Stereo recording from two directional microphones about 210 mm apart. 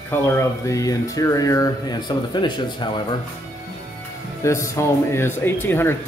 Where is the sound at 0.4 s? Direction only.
15° left (ahead or behind).